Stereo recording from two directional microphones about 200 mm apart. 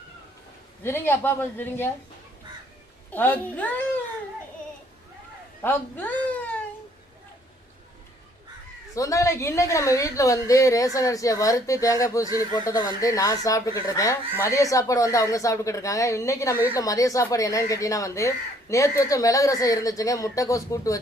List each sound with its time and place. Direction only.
0.8 s a woman's voice: 10° left (ahead or behind)
3.1 s a woman's voice: 10° left (ahead or behind)
5.6 s speech: 10° left (ahead or behind)
9.0 s a woman's voice: 15° left (ahead or behind)